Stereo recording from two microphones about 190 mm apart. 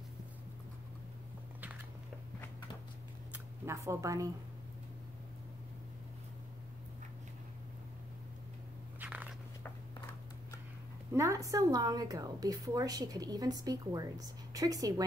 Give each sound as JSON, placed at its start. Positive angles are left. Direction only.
{"t": 3.6, "sound": "speech", "side_deg": -15}
{"t": 9.0, "sound": "walk", "side_deg": -10}
{"t": 11.1, "sound": "a woman's voice", "side_deg": -15}